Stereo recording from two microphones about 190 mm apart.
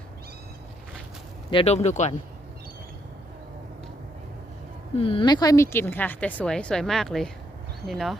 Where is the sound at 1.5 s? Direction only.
30° left (ahead or behind).